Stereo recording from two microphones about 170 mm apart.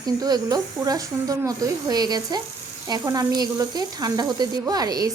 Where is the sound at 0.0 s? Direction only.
20° right (ahead or behind).